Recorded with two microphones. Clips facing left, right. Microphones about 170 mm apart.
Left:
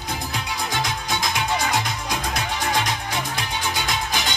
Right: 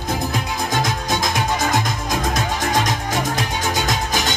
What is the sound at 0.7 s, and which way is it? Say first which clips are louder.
Music: right 6 dB; 45° right (ahead or behind).